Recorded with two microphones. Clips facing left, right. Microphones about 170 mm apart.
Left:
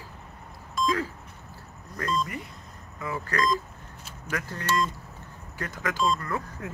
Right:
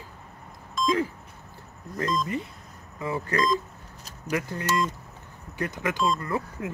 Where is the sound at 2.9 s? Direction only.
25° right (ahead or behind).